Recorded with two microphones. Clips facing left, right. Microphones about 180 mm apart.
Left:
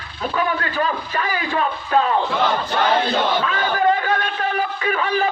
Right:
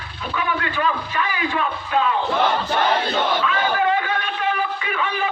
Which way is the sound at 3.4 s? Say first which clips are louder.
Left 1 dB; 40° left (ahead or behind).